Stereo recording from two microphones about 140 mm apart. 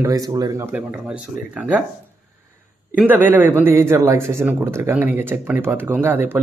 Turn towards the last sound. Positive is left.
turn(degrees=-15)  # may be behind; listen again after turning